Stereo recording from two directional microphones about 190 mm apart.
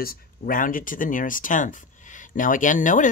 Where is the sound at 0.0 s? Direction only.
50° left (ahead or behind).